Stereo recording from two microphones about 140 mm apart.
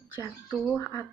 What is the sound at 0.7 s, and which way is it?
Speech, 20° left (ahead or behind).